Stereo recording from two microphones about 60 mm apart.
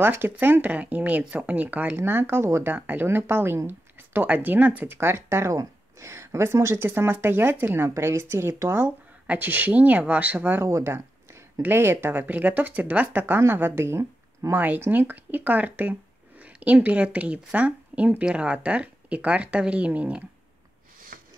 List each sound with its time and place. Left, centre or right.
0.0 s speech: right
2.0 s speech: right
2.4 s speech: right
2.7 s speech: right
4.9 s speech: right
7.9 s speech: right
9.3 s speech: right
10.6 s speech: right
14.5 s speech: right